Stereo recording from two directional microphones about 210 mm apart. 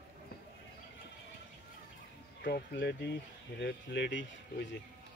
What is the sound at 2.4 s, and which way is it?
Speech, 50° left (ahead or behind).